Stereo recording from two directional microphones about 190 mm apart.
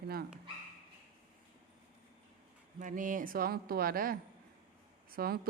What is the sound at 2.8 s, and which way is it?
Speech, 45° right (ahead or behind).